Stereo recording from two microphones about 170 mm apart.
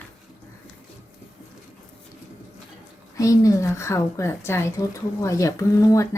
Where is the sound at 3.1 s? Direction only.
20° left (ahead or behind).